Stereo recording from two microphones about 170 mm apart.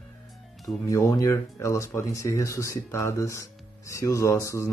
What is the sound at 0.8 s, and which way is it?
Speech, 15° left (ahead or behind).